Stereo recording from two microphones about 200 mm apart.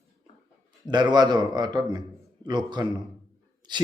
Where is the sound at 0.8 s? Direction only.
20° right (ahead or behind).